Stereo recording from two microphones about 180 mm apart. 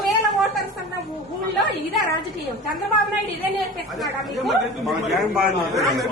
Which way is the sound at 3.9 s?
Centre (ahead or behind).